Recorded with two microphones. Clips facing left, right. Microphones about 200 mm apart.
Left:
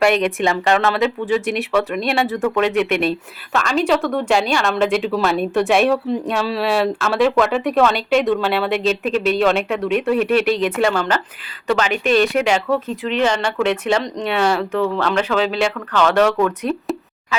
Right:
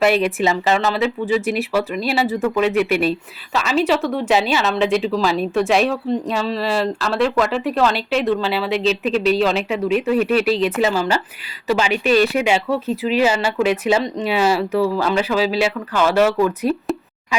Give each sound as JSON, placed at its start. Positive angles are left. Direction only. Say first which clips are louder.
{"t": 0.0, "sound": "speech", "louder": "even", "side_deg": -5}
{"t": 8.7, "sound": "speech", "louder": "even", "side_deg": 50}
{"t": 9.6, "sound": "speech", "louder": "even", "side_deg": -5}